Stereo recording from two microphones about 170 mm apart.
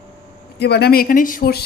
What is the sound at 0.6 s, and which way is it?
Speech, 75° left (ahead or behind).